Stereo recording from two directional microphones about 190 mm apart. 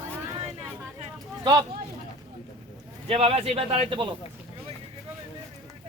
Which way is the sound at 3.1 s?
30° right (ahead or behind).